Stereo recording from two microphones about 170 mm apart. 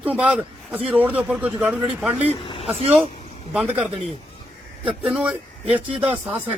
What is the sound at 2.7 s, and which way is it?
Speech, 35° right (ahead or behind).